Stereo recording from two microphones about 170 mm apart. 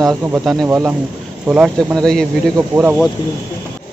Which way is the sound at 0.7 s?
15° right (ahead or behind).